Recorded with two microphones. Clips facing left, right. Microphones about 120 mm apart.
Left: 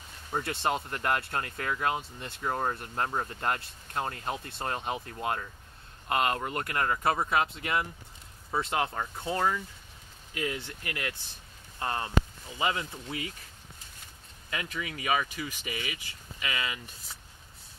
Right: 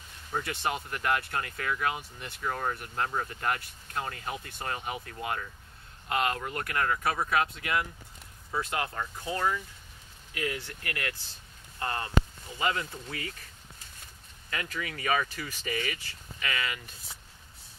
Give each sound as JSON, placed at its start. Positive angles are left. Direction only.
{"t": 0.4, "sound": "speech", "side_deg": 25}
{"t": 14.5, "sound": "speech", "side_deg": 20}